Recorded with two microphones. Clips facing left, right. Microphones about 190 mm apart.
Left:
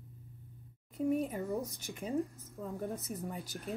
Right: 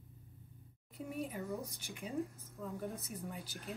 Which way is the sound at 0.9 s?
45° left (ahead or behind).